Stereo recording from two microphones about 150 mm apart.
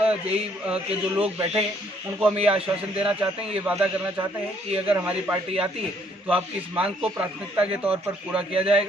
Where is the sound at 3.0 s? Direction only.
10° right (ahead or behind).